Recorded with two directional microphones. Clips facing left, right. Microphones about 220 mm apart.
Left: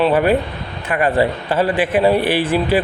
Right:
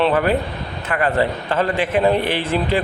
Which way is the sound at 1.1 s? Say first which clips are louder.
Left 3 dB; 15° left (ahead or behind).